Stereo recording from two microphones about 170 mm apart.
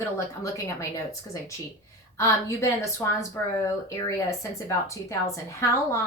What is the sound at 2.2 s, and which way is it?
A woman's voice, 15° left (ahead or behind).